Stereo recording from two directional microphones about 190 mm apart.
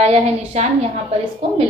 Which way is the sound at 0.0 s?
35° right (ahead or behind).